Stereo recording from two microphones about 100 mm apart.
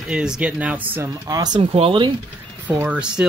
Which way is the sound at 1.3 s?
40° right (ahead or behind).